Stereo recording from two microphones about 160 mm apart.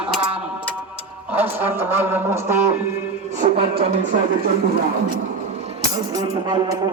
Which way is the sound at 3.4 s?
40° right (ahead or behind).